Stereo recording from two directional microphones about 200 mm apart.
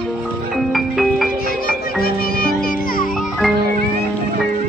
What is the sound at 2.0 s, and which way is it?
Music, 50° left (ahead or behind).